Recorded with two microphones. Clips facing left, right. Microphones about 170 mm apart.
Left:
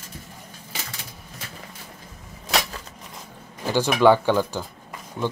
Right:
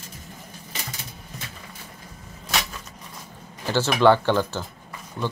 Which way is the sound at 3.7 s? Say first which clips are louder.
Left 1 dB; 10° left (ahead or behind).